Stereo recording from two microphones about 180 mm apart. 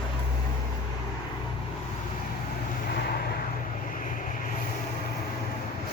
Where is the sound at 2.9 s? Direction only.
60° left (ahead or behind).